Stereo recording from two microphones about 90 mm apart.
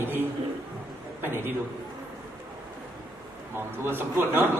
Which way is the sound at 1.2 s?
25° right (ahead or behind).